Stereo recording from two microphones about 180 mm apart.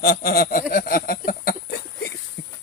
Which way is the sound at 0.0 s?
60° left (ahead or behind).